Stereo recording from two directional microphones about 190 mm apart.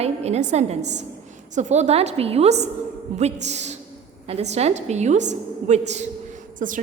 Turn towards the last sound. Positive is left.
turn(degrees=-45)  # may be behind; listen again after turning